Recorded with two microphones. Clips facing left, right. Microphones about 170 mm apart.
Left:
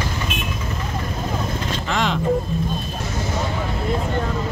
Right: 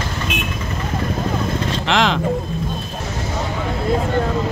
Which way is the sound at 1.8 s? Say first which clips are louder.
Right 5 dB; 90° right.